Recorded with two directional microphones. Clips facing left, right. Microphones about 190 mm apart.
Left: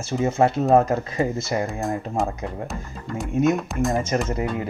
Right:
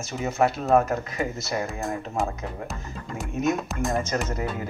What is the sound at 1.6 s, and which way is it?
Speech, centre (ahead or behind).